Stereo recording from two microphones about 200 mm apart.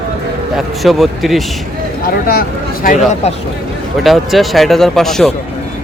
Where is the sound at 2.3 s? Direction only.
45° left (ahead or behind).